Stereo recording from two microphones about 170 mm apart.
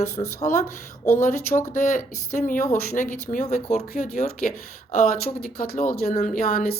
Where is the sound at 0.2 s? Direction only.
40° left (ahead or behind).